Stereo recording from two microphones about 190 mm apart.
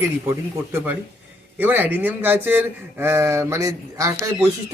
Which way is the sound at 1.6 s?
10° right (ahead or behind).